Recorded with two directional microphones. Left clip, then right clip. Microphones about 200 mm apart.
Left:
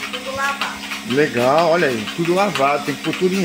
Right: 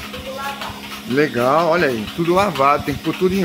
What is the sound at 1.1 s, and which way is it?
Speech, 5° right (ahead or behind).